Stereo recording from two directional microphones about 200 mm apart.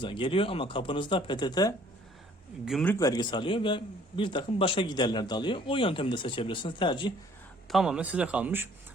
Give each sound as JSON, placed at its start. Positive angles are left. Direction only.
{"t": 0.0, "sound": "a man's voice", "side_deg": 25}
{"t": 2.6, "sound": "speech", "side_deg": 0}
{"t": 2.9, "sound": "a man's voice", "side_deg": 20}
{"t": 7.7, "sound": "speech", "side_deg": 0}